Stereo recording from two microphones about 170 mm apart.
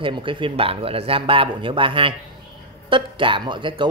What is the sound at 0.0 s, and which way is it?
Speech, 30° right (ahead or behind).